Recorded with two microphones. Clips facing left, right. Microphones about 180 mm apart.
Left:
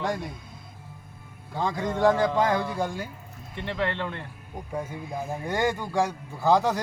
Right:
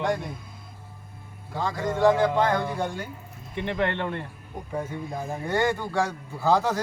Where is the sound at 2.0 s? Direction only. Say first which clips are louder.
Right 1 dB; 15° right (ahead or behind).